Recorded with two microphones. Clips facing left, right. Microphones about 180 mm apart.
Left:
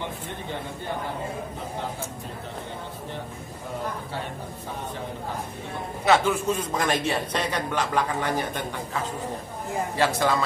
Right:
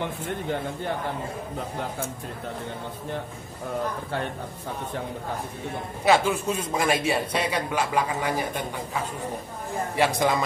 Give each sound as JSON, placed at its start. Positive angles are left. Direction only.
{"t": 6.0, "sound": "a man's voice", "side_deg": -10}
{"t": 9.9, "sound": "a man's voice", "side_deg": -15}